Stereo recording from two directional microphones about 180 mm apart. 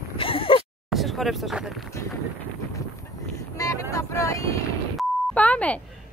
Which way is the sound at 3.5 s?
15° left (ahead or behind).